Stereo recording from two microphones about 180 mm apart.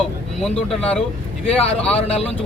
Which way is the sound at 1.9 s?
35° left (ahead or behind).